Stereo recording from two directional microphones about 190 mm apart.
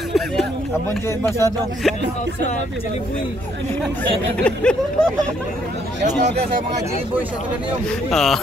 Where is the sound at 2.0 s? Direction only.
65° right (ahead or behind).